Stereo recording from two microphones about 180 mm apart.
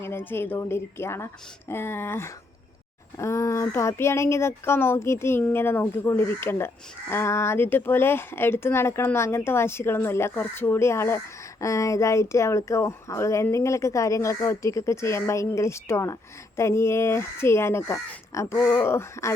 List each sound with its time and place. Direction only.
0.0 s speech: 10° left (ahead or behind)